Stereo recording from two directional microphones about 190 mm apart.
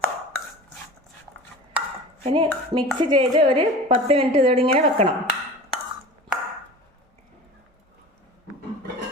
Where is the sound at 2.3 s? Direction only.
25° right (ahead or behind).